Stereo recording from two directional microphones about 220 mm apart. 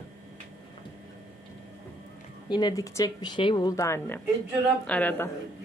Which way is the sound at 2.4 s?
20° left (ahead or behind).